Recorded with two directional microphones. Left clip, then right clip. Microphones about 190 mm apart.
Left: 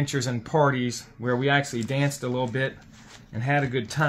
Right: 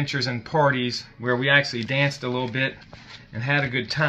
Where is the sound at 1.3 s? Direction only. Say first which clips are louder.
Right 4 dB; 50° left (ahead or behind).